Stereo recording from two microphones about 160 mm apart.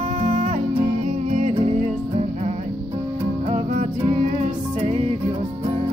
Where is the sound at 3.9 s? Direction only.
35° right (ahead or behind).